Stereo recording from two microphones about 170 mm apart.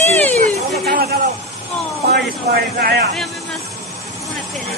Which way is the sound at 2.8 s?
70° right (ahead or behind).